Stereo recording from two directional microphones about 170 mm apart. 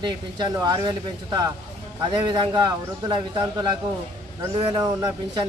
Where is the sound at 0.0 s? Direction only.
25° right (ahead or behind).